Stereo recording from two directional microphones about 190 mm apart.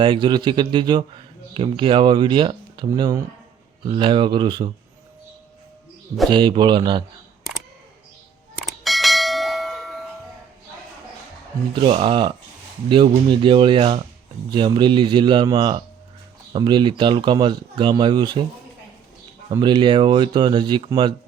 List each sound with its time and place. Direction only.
0.0 s speech: 25° right (ahead or behind)
6.3 s speech: 25° right (ahead or behind)
8.6 s bell: centre (ahead or behind)
11.7 s speech: 30° right (ahead or behind)
19.5 s speech: 25° right (ahead or behind)